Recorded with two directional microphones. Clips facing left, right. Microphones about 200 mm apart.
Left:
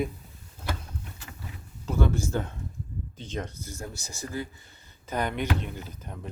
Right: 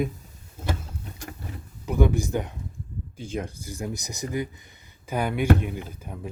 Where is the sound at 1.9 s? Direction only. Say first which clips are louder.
Right 4 dB; 15° right (ahead or behind).